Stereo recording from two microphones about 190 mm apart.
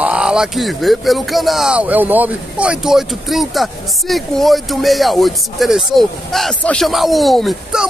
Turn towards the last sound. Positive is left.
turn(degrees=0)  # may be behind; listen again after turning